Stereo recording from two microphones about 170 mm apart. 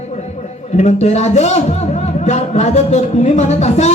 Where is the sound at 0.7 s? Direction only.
40° left (ahead or behind).